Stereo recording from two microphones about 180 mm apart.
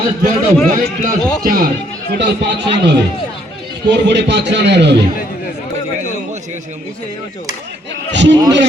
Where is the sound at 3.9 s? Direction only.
75° right (ahead or behind).